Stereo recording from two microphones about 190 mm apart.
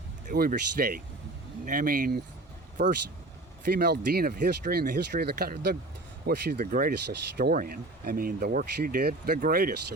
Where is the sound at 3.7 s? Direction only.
60° right (ahead or behind).